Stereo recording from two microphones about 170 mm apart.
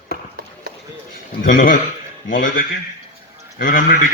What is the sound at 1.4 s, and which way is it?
A man's voice, 55° left (ahead or behind).